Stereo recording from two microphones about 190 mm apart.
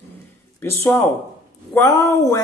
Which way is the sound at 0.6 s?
15° left (ahead or behind).